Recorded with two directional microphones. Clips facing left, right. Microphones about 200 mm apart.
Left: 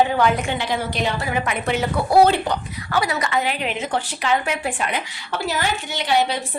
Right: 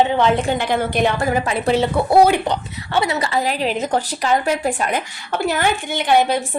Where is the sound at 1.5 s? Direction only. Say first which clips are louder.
Right 5 dB; 30° right (ahead or behind).